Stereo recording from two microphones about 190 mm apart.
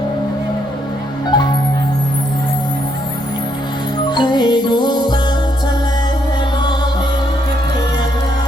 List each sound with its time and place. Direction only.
1.3 s music: 20° left (ahead or behind)
4.1 s music: 25° left (ahead or behind)